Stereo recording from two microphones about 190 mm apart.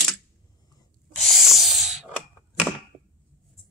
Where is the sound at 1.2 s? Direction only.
Centre (ahead or behind).